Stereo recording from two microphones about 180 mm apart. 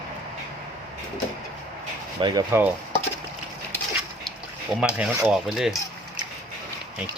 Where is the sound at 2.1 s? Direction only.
25° right (ahead or behind).